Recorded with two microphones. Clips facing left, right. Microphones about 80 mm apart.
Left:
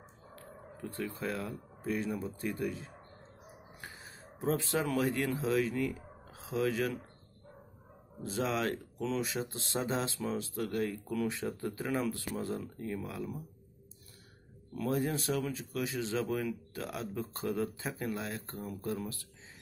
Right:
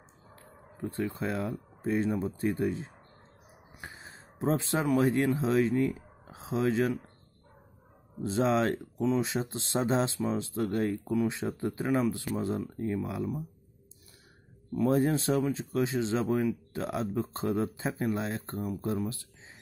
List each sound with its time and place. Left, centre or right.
0.4 s speech: right
8.3 s speech: right
14.8 s speech: right